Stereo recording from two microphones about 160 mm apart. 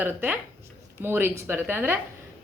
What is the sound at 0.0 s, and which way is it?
A woman's voice, 10° right (ahead or behind).